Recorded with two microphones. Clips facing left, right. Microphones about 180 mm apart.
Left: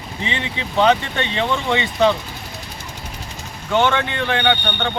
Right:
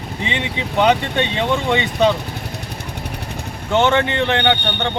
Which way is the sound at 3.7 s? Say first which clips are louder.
Right 2 dB; 20° right (ahead or behind).